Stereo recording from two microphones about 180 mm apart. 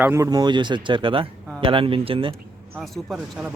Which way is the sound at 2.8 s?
Centre (ahead or behind).